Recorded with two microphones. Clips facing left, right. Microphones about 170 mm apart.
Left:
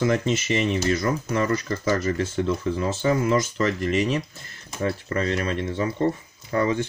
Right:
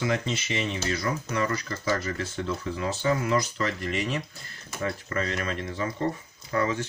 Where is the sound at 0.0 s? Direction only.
45° left (ahead or behind).